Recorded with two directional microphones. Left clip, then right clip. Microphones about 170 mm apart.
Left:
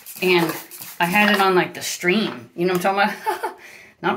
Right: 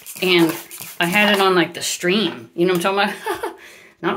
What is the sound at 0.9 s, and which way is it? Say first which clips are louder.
Speech: right 1 dB; 20° right (ahead or behind).